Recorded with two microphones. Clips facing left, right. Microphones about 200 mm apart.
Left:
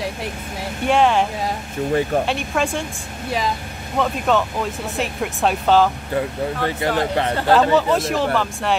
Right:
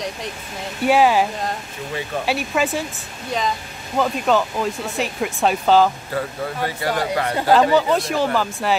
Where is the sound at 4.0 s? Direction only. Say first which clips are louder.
Even; centre (ahead or behind).